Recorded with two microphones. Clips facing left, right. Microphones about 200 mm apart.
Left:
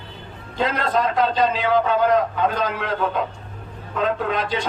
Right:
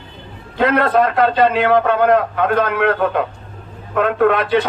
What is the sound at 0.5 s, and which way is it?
A man's voice, 60° right (ahead or behind).